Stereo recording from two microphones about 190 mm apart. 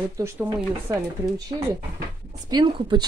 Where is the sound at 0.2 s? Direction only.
10° right (ahead or behind).